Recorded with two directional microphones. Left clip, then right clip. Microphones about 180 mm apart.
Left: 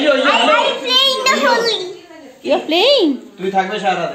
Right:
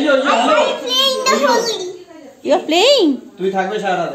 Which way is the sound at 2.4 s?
10° right (ahead or behind).